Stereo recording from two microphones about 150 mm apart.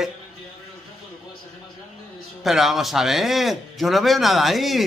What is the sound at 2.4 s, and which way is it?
A man's voice, centre (ahead or behind).